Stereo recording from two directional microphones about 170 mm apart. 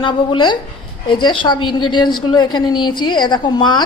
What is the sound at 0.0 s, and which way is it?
A woman's voice, 30° left (ahead or behind).